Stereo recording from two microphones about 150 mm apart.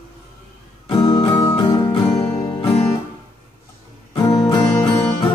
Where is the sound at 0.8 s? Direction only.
30° left (ahead or behind).